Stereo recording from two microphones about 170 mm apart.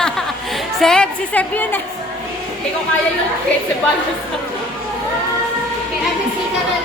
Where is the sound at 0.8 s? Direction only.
5° left (ahead or behind).